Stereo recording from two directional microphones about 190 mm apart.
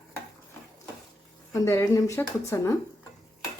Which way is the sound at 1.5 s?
15° left (ahead or behind).